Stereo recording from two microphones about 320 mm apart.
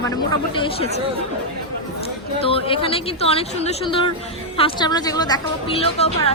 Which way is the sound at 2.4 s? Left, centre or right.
Centre.